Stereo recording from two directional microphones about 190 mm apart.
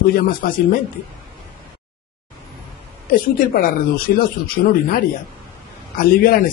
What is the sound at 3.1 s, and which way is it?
Speech, 50° left (ahead or behind).